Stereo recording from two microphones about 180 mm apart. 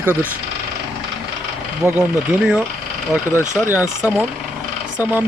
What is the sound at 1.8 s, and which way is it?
Speech, 15° right (ahead or behind).